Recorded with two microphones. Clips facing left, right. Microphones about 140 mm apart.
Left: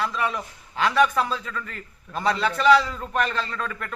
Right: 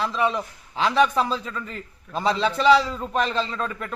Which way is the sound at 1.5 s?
20° right (ahead or behind).